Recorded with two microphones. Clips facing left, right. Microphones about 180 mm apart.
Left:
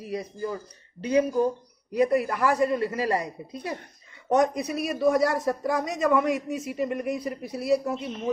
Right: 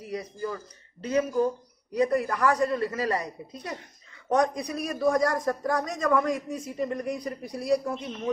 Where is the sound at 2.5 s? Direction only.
15° left (ahead or behind).